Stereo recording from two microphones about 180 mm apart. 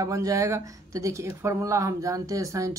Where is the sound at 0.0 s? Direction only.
20° right (ahead or behind).